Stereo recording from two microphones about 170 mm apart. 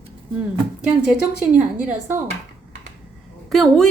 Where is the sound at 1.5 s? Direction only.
10° right (ahead or behind).